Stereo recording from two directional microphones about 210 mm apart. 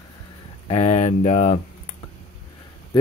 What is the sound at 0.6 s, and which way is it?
Speech, 30° left (ahead or behind).